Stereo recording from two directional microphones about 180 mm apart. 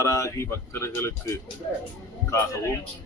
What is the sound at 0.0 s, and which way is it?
A man's voice, 15° left (ahead or behind).